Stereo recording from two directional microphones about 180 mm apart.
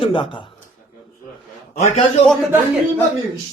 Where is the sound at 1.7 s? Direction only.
40° left (ahead or behind).